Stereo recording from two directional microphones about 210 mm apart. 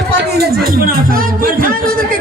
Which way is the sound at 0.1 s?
50° right (ahead or behind).